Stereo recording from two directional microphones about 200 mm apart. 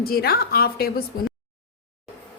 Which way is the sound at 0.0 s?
50° left (ahead or behind).